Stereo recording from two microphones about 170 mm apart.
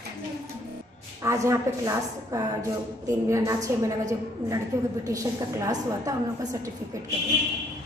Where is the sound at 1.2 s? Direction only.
20° right (ahead or behind).